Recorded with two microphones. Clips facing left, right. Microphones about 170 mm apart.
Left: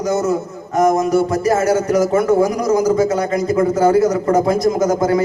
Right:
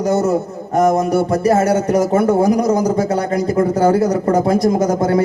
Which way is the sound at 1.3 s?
30° right (ahead or behind).